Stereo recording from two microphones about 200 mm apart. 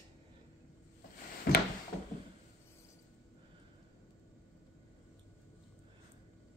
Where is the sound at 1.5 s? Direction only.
45° left (ahead or behind).